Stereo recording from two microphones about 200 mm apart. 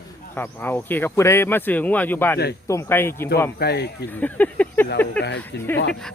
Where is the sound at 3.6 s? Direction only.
55° left (ahead or behind).